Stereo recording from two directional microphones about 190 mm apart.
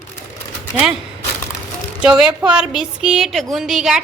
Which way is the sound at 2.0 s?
5° right (ahead or behind).